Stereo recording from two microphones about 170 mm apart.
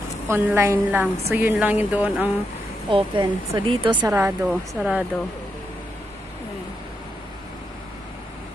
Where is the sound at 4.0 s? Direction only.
15° right (ahead or behind).